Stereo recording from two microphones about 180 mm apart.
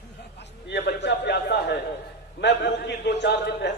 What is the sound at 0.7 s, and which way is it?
Speech, 70° left (ahead or behind).